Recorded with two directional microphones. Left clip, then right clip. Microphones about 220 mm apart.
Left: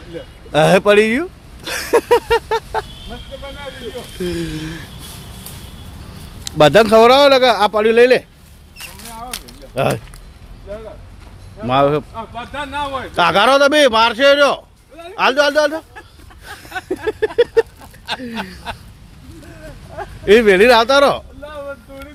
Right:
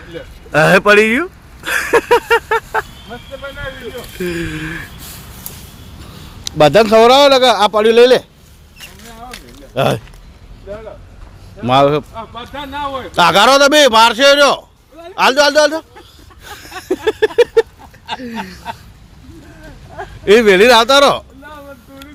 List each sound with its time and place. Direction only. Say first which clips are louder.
0.5 s speech: right 2 dB; centre (ahead or behind)
4.2 s speech: right 3 dB; centre (ahead or behind)
6.4 s a man's voice: right 1 dB; 5° right (ahead or behind)
9.7 s a man's voice: right 3 dB; 15° right (ahead or behind)
11.6 s a man's voice: right 3 dB; 15° right (ahead or behind)
13.1 s a man's voice: right 3 dB; 15° right (ahead or behind)
16.4 s a sound: left 2 dB; 15° right (ahead or behind)
18.7 s speech: right 2 dB; 25° left (ahead or behind)
20.2 s a man's voice: right 2 dB; 10° right (ahead or behind)